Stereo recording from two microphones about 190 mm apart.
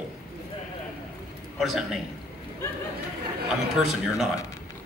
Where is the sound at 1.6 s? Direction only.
Centre (ahead or behind).